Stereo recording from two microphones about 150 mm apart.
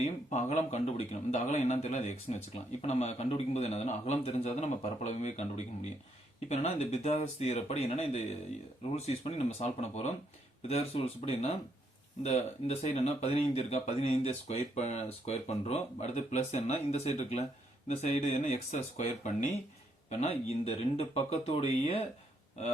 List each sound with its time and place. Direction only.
0.0 s speech: 50° left (ahead or behind)